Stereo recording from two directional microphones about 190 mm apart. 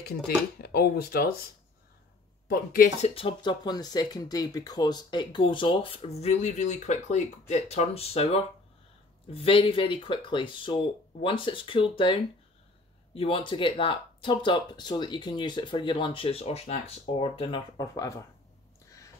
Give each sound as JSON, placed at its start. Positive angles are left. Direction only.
{"t": 0.6, "sound": "speech", "side_deg": 55}
{"t": 2.5, "sound": "speech", "side_deg": 45}
{"t": 3.2, "sound": "speech", "side_deg": 25}
{"t": 17.7, "sound": "speech", "side_deg": 15}